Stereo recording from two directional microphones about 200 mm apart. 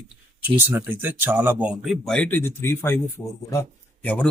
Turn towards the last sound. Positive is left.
turn(degrees=10)  # may be behind; listen again after turning